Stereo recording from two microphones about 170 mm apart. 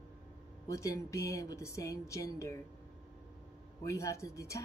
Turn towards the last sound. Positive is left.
turn(degrees=15)  # may be behind; listen again after turning